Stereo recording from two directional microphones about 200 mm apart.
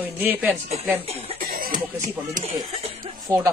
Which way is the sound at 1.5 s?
45° right (ahead or behind).